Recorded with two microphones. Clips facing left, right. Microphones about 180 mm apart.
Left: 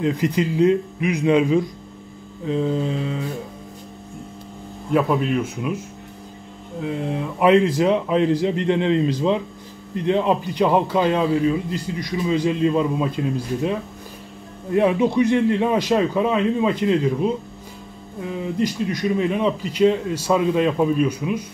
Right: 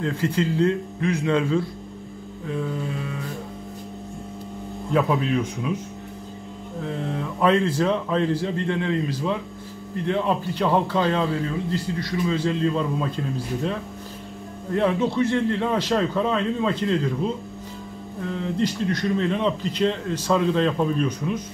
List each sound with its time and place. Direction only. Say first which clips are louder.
0.0 s a man's voice: left 3 dB; 15° left (ahead or behind)
2.4 s mantra: left 6 dB; 25° left (ahead or behind)
4.9 s speech: left 2 dB; 5° left (ahead or behind)
6.8 s a man's voice: left 4 dB; 15° left (ahead or behind)
14.7 s a man's voice: left 4 dB; 15° left (ahead or behind)